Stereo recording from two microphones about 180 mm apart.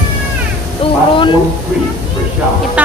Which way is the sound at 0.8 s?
30° left (ahead or behind).